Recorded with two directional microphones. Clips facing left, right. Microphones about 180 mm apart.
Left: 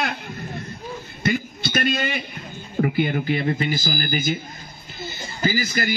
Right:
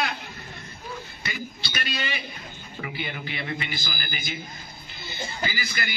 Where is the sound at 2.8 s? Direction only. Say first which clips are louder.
Left 12 dB; 50° left (ahead or behind).